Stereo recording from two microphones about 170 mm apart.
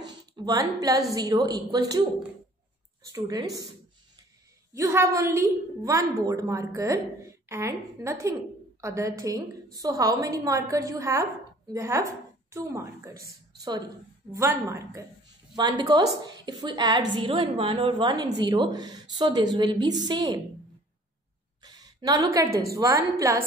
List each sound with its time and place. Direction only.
0.5 s a woman's voice: 20° right (ahead or behind)
3.1 s a woman's voice: 20° right (ahead or behind)
4.7 s a woman's voice: 15° right (ahead or behind)
14.3 s a woman's voice: 15° right (ahead or behind)
21.6 s a woman's voice: 25° right (ahead or behind)